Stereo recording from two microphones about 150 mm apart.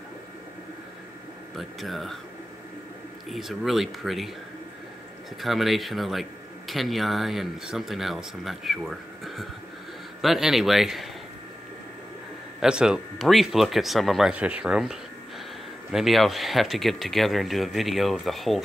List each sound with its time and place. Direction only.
1.6 s speech: centre (ahead or behind)
3.3 s speech: centre (ahead or behind)
5.4 s speech: centre (ahead or behind)
12.5 s speech: 5° right (ahead or behind)